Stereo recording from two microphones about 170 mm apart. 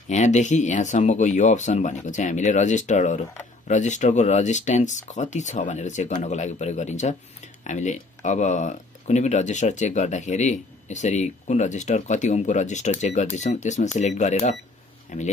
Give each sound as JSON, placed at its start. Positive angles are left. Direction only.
{"t": 0.1, "sound": "speech", "side_deg": 45}